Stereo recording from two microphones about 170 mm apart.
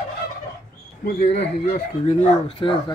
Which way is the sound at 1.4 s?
40° left (ahead or behind).